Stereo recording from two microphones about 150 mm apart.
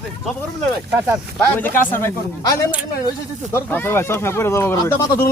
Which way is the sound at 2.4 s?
25° left (ahead or behind).